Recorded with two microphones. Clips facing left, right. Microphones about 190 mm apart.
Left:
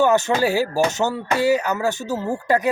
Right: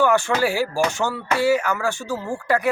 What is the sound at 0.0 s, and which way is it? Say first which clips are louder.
A man's voice: left 1 dB; 20° left (ahead or behind).